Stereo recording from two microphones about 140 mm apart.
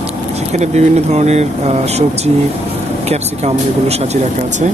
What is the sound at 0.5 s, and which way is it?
Speech, 55° right (ahead or behind).